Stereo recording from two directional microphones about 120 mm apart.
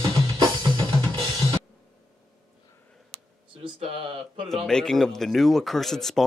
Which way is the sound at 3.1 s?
50° right (ahead or behind).